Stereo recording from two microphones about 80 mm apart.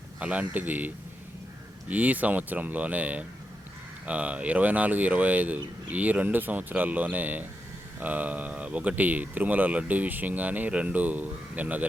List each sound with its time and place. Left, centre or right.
0.2 s speech: centre